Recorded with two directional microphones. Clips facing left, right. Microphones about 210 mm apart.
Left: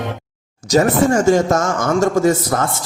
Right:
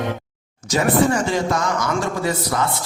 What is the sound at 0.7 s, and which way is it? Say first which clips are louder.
Speech: left 4 dB; 40° left (ahead or behind).